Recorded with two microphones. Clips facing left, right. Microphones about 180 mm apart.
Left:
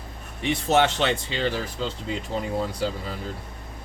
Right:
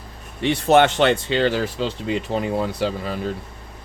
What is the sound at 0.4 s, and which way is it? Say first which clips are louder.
Speech: right 5 dB; 65° right (ahead or behind).